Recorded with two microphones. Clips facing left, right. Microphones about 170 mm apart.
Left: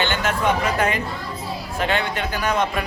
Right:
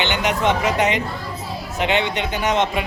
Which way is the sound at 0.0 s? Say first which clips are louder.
Right 2 dB; 20° right (ahead or behind).